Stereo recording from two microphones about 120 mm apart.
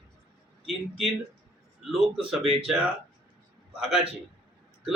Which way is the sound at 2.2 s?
5° right (ahead or behind).